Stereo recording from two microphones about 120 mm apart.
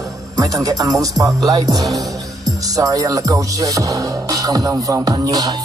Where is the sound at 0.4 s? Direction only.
30° right (ahead or behind).